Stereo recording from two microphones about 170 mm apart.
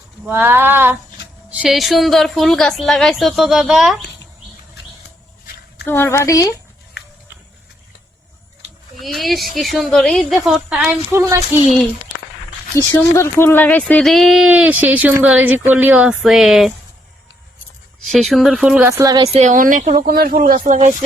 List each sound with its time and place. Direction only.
0.3 s a sound: 10° right (ahead or behind)
1.5 s speech: 5° right (ahead or behind)
5.9 s a woman's voice: 15° left (ahead or behind)
9.0 s speech: centre (ahead or behind)
11.1 s a sound: 15° right (ahead or behind)
12.7 s speech: 15° left (ahead or behind); by 16.7 s centre (ahead or behind)
18.1 s speech: centre (ahead or behind)
18.9 s speech: 20° right (ahead or behind)
19.2 s speech: 40° right (ahead or behind)